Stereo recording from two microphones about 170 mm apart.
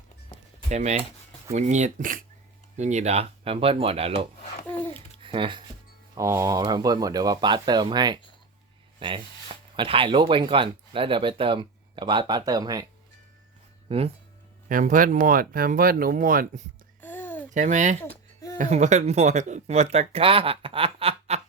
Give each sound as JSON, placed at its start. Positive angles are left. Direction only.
{"t": 0.7, "sound": "speech", "side_deg": -40}
{"t": 5.2, "sound": "music", "side_deg": -30}
{"t": 6.1, "sound": "speech", "side_deg": -20}
{"t": 13.8, "sound": "speech", "side_deg": -35}
{"t": 14.7, "sound": "speech", "side_deg": -50}
{"t": 17.0, "sound": "babbling", "side_deg": 10}
{"t": 17.5, "sound": "speech", "side_deg": -45}
{"t": 18.0, "sound": "a sound", "side_deg": 20}
{"t": 18.5, "sound": "speech", "side_deg": -45}